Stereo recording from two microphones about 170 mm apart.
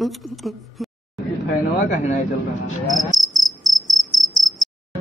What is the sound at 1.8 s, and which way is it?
Speech, 45° left (ahead or behind).